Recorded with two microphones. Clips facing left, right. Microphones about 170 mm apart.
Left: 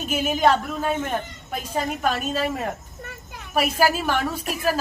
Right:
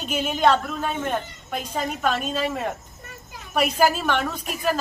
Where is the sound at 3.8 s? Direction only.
5° left (ahead or behind).